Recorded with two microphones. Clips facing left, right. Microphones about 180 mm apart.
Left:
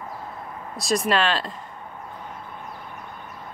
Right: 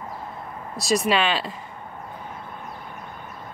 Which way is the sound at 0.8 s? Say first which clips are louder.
Right 1 dB; centre (ahead or behind).